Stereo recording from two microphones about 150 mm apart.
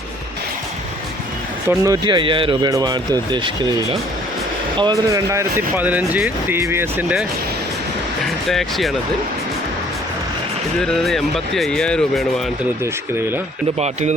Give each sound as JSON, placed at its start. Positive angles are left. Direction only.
{"t": 1.8, "sound": "speech", "side_deg": -25}
{"t": 8.4, "sound": "speech", "side_deg": 0}
{"t": 10.8, "sound": "speech", "side_deg": 0}
{"t": 13.7, "sound": "speech", "side_deg": -45}